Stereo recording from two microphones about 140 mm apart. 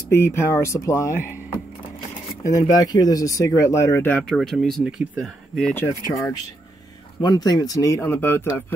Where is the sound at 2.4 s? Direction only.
25° left (ahead or behind); by 5.9 s 5° left (ahead or behind).